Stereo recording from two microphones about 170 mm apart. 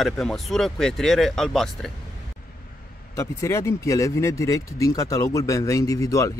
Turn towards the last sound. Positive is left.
turn(degrees=20)  # may be behind; listen again after turning